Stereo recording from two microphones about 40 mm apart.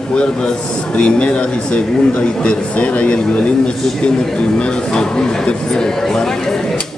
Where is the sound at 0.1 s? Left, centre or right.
Left.